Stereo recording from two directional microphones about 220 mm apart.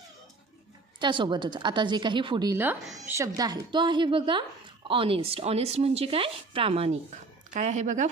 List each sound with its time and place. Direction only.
0.9 s a woman's voice: 20° right (ahead or behind)